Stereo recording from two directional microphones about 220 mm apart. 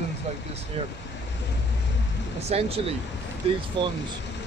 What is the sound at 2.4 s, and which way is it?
Speech, 30° right (ahead or behind).